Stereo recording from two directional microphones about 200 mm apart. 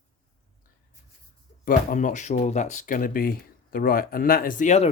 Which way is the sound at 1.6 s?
40° left (ahead or behind).